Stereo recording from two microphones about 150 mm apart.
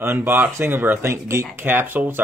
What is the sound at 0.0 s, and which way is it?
Speech, 15° right (ahead or behind).